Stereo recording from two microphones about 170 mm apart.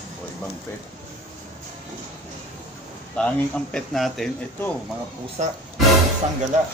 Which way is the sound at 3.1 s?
5° left (ahead or behind).